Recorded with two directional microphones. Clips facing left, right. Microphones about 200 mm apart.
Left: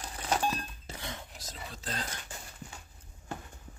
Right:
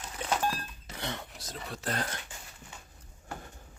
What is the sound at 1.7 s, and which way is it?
Speech, 65° right (ahead or behind).